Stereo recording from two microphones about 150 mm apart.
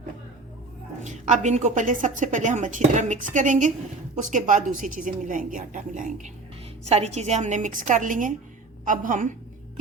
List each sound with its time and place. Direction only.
1.0 s a woman's voice: 55° right (ahead or behind)
6.8 s a woman's voice: 45° right (ahead or behind); by 9.3 s 65° right (ahead or behind)